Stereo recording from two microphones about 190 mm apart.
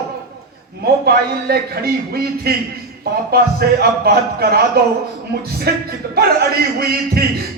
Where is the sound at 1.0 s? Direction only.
55° right (ahead or behind).